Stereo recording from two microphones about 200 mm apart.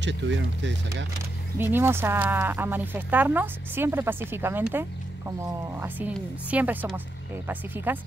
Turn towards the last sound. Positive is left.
turn(degrees=-10)  # may be behind; listen again after turning